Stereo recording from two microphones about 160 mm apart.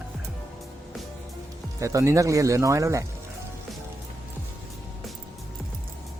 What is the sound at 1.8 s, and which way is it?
Speech, 20° right (ahead or behind).